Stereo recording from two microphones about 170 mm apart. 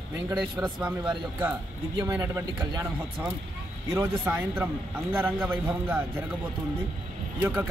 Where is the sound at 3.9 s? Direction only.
15° right (ahead or behind).